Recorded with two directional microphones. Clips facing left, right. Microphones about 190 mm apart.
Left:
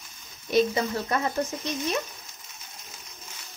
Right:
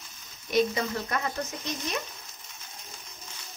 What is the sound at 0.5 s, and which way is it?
Speech, 30° left (ahead or behind).